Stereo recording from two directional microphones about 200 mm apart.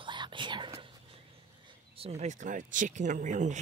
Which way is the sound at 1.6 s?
30° right (ahead or behind).